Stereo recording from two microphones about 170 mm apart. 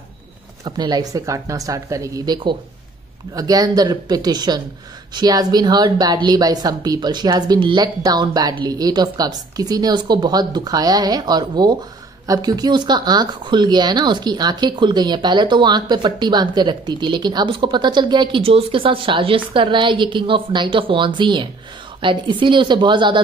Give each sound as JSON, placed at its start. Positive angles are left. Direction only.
{"t": 0.7, "sound": "speech", "side_deg": -25}